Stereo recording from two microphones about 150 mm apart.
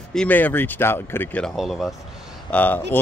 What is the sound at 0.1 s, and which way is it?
Speech, 10° left (ahead or behind).